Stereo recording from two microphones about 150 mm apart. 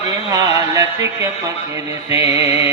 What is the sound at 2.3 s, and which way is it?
Music, 20° right (ahead or behind).